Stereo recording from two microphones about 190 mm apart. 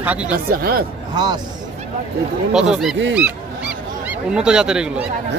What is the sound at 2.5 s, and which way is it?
Speech, 5° right (ahead or behind).